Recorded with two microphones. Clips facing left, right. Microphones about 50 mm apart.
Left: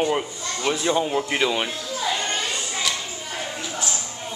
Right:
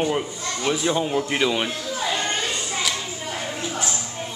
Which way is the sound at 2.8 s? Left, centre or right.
Centre.